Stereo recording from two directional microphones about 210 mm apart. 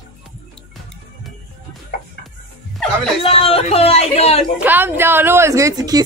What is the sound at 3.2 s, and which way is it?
A man's voice, 25° left (ahead or behind).